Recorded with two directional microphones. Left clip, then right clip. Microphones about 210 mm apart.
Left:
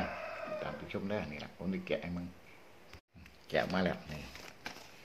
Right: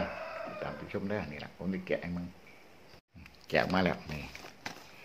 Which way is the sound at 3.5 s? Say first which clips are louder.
Right 4 dB; 20° right (ahead or behind).